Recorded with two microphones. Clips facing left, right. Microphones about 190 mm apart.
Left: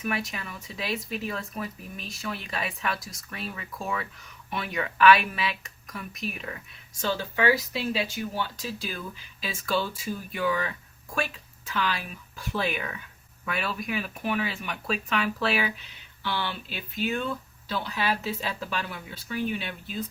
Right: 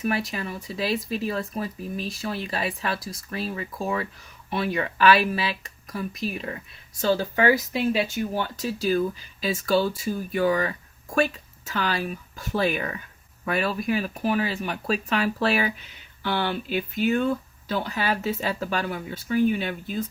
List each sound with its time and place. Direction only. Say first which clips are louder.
0.0 s speech: right 5 dB; 35° right (ahead or behind)